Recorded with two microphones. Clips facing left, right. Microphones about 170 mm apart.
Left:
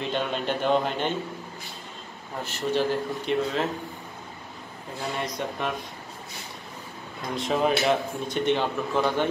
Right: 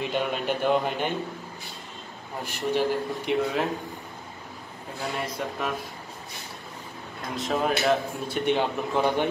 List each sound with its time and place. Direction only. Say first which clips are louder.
0.0 s speech: right 1 dB; 10° right (ahead or behind)
2.4 s speech: even; 15° right (ahead or behind)
5.1 s speech: left 1 dB; 5° right (ahead or behind)
7.2 s speech: left 2 dB; centre (ahead or behind)
8.5 s speech: right 1 dB; 15° right (ahead or behind)